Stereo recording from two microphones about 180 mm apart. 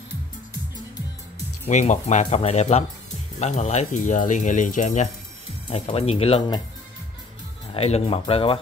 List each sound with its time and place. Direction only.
1.7 s speech: 40° left (ahead or behind)
7.7 s speech: 35° left (ahead or behind)